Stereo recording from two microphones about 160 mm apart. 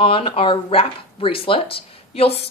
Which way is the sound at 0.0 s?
35° left (ahead or behind).